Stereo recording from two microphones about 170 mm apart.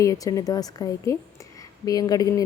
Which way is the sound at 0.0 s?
20° left (ahead or behind).